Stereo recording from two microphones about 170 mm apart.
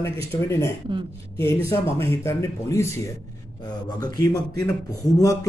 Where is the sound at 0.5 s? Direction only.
15° left (ahead or behind).